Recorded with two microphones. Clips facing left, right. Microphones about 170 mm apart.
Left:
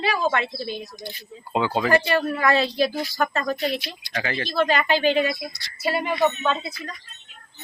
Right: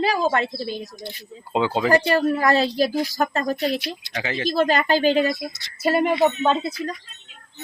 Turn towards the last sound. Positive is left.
turn(degrees=-40)  # may be behind; listen again after turning